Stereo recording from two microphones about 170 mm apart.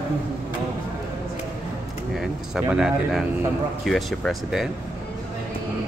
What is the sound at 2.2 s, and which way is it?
Speech, 5° right (ahead or behind).